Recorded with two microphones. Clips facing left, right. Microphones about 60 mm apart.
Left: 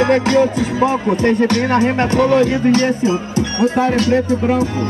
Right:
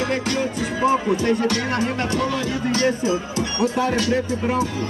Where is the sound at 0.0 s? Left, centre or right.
Left.